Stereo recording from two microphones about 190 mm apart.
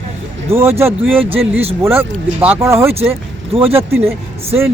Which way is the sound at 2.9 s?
30° right (ahead or behind).